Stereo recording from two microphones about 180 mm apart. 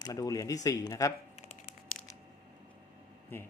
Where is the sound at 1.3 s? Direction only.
35° left (ahead or behind).